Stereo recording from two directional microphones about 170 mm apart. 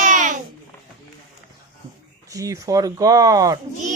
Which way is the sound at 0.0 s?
50° right (ahead or behind).